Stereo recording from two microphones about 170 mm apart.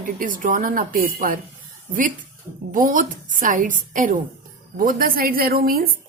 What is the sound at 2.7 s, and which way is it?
A woman's voice, 50° right (ahead or behind).